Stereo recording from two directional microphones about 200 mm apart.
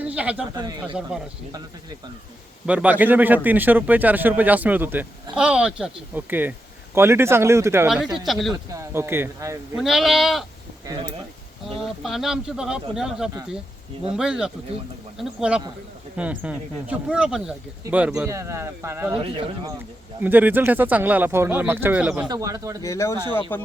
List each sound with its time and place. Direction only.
0.0 s speech: 5° right (ahead or behind)
0.5 s speech: 20° right (ahead or behind)
2.6 s a man's voice: 5° right (ahead or behind)
8.7 s a man's voice: 15° right (ahead or behind)
9.7 s speech: centre (ahead or behind)
10.8 s a man's voice: 15° right (ahead or behind)
11.8 s a man's voice: centre (ahead or behind)
19.1 s speech: 25° right (ahead or behind)
20.1 s a man's voice: 10° right (ahead or behind)
22.3 s a man's voice: 15° right (ahead or behind)
22.8 s speech: 15° left (ahead or behind)